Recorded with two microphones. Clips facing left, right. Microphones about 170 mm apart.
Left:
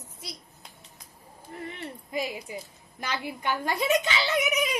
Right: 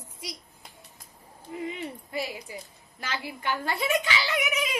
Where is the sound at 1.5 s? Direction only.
10° right (ahead or behind).